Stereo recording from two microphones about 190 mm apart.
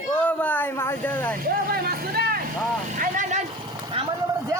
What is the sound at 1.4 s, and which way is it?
Vehicle, 50° right (ahead or behind).